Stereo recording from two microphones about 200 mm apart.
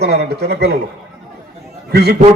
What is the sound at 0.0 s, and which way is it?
Speech, 55° right (ahead or behind).